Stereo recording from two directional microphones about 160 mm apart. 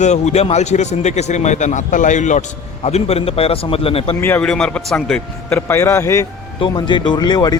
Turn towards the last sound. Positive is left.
turn(degrees=25)  # may be behind; listen again after turning